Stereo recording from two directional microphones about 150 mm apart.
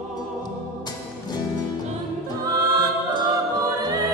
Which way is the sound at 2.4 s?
25° right (ahead or behind).